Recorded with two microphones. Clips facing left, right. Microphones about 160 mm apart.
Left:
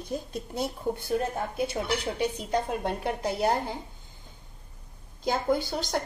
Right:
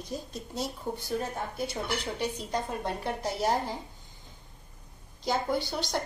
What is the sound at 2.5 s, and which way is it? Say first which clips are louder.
A woman's voice: left 4 dB; 60° left (ahead or behind).